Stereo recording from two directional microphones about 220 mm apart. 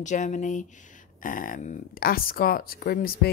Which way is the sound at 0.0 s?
35° left (ahead or behind).